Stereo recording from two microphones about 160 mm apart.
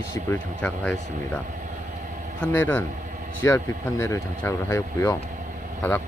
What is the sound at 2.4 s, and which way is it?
Speech, 10° left (ahead or behind).